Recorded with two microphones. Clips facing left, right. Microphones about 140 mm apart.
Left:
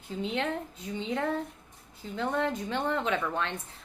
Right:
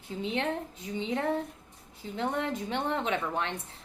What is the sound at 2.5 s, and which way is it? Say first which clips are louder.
A woman's voice: left 1 dB; 20° right (ahead or behind).